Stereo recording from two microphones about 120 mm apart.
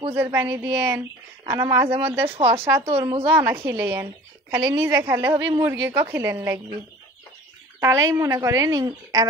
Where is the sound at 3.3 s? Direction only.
15° right (ahead or behind).